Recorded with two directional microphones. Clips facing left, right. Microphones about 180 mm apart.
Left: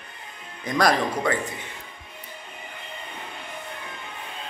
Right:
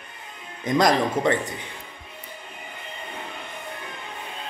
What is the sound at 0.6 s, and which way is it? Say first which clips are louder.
Speech: right 2 dB; 20° right (ahead or behind).